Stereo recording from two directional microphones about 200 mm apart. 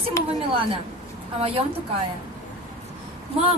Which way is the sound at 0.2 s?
15° left (ahead or behind).